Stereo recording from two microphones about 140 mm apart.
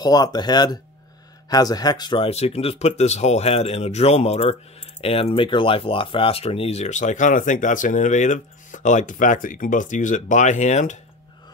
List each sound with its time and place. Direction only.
0.0 s speech: 30° left (ahead or behind)
2.2 s speech: 50° left (ahead or behind)